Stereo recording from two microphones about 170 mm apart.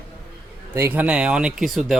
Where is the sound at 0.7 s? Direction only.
15° right (ahead or behind).